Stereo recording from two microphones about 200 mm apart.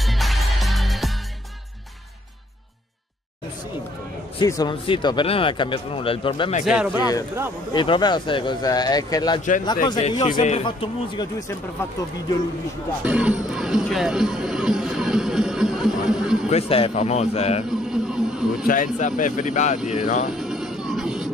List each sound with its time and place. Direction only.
0.0 s music: centre (ahead or behind)
4.4 s speech: 20° left (ahead or behind)
6.6 s speech: 5° right (ahead or behind)
6.9 s speech: 20° left (ahead or behind)
13.0 s speech: 5° right (ahead or behind)
16.4 s speech: 30° left (ahead or behind)
17.6 s speech: 5° right (ahead or behind)
18.7 s speech: 40° left (ahead or behind)
20.2 s vehicle: centre (ahead or behind)